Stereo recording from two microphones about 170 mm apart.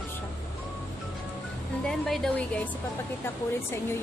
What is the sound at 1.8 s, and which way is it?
Speech, centre (ahead or behind).